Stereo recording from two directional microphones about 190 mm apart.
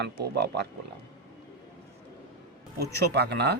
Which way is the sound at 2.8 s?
60° right (ahead or behind).